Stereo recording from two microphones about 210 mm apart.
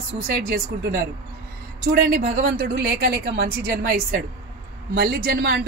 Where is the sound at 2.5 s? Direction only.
45° right (ahead or behind).